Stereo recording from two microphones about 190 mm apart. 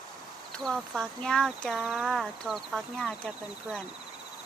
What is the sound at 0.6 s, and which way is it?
Speech, centre (ahead or behind).